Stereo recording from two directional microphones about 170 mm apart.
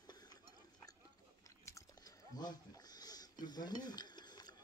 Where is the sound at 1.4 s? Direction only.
20° left (ahead or behind).